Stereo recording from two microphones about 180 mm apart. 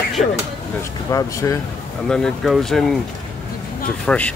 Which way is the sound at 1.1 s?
15° left (ahead or behind).